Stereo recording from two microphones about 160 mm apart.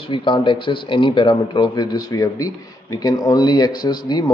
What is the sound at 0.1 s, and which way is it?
Speech, 30° left (ahead or behind).